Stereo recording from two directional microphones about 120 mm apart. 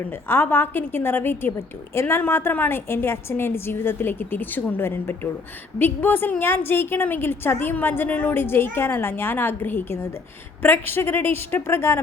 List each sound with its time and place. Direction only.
0.1 s a woman's voice: 15° left (ahead or behind)